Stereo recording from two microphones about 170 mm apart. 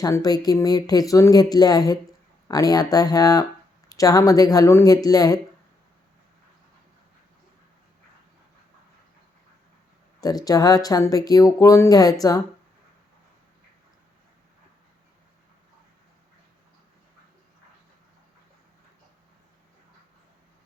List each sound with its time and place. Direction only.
0.0 s speech: 20° left (ahead or behind)
10.2 s speech: 20° left (ahead or behind)